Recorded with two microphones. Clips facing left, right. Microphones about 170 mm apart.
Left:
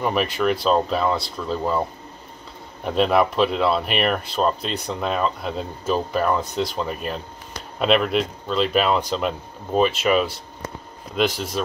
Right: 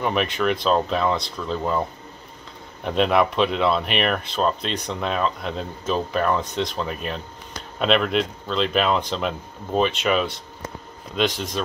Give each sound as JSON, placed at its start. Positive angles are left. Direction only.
{"t": 0.0, "sound": "speech", "side_deg": 0}